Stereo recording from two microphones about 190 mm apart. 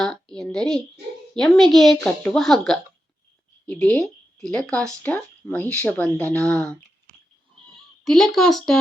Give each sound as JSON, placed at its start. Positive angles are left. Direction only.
{"t": 0.0, "sound": "speech", "side_deg": 5}
{"t": 8.0, "sound": "speech", "side_deg": 0}